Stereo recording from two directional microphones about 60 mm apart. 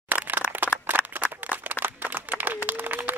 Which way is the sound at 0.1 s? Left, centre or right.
Right.